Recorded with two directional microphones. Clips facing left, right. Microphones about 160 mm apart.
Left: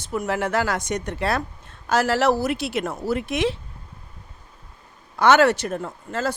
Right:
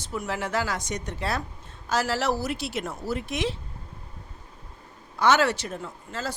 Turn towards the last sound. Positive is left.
turn(degrees=60)  # may be behind; listen again after turning